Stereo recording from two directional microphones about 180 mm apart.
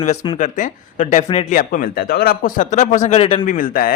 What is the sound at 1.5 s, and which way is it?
Speech, 50° left (ahead or behind).